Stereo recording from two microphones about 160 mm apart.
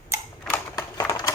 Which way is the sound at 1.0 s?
25° left (ahead or behind).